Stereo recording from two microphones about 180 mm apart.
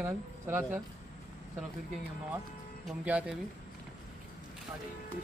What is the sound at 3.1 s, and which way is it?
Speech, 5° right (ahead or behind).